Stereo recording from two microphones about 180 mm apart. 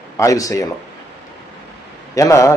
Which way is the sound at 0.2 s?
20° left (ahead or behind).